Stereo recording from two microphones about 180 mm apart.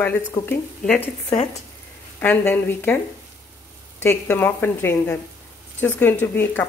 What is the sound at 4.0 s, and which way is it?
Speech, 10° left (ahead or behind).